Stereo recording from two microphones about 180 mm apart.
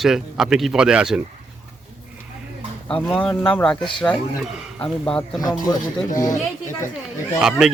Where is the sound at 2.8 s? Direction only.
5° left (ahead or behind).